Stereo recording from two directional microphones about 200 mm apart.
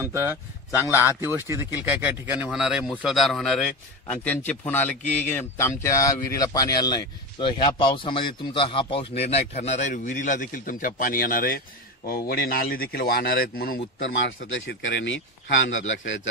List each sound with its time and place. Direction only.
0.0 s a man's voice: 10° right (ahead or behind); by 13.7 s 50° left (ahead or behind)
14.0 s speech: 70° left (ahead or behind)